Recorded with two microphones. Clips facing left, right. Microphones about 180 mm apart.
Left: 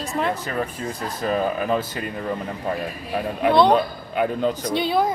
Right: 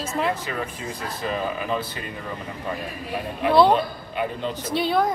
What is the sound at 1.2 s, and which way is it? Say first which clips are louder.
Speech: left 5 dB; 45° left (ahead or behind).